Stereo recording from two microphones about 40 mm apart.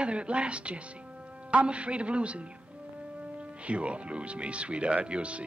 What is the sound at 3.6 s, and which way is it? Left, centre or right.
Speech, right.